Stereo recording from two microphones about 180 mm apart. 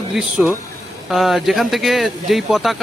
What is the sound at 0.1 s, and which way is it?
Speech, 5° right (ahead or behind).